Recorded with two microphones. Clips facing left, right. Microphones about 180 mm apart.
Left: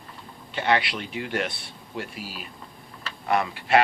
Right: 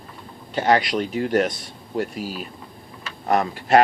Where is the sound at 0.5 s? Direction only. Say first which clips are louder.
Right 5 dB; 40° right (ahead or behind).